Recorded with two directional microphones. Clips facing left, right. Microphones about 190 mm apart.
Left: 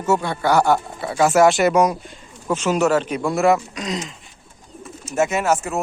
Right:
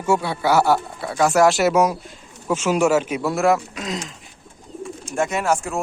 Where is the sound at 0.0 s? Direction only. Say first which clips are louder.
Even; 10° right (ahead or behind).